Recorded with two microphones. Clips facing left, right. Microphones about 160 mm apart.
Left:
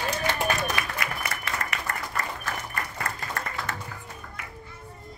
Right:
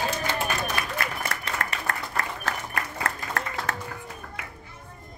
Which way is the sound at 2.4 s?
90° right.